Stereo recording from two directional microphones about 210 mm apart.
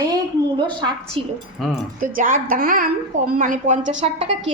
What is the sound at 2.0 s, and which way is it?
A woman's voice, 40° right (ahead or behind).